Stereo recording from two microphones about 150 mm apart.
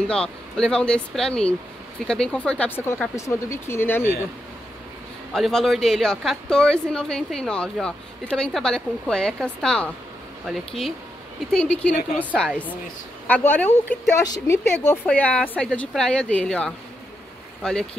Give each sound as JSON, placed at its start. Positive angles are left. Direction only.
{"t": 0.0, "sound": "a woman's voice", "side_deg": 5}
{"t": 5.3, "sound": "a woman's voice", "side_deg": 5}
{"t": 11.9, "sound": "a woman's voice", "side_deg": 65}
{"t": 12.4, "sound": "speech", "side_deg": 10}
{"t": 14.2, "sound": "speech", "side_deg": 25}